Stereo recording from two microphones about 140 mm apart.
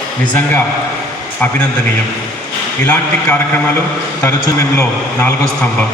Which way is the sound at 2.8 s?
15° left (ahead or behind).